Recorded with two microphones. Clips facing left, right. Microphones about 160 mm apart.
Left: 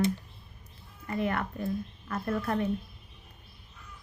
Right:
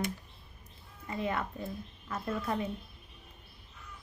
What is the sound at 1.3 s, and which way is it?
Speech, 5° right (ahead or behind).